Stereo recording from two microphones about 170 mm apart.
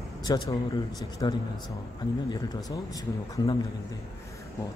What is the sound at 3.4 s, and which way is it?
Speech, 25° left (ahead or behind).